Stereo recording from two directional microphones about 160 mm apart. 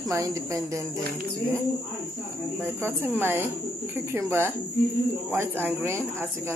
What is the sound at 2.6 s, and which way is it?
Speech, 15° right (ahead or behind).